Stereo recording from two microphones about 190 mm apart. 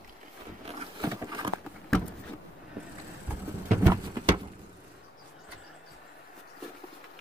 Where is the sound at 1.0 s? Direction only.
20° right (ahead or behind).